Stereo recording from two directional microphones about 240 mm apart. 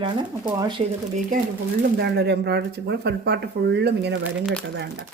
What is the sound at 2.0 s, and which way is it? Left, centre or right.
Speech, right.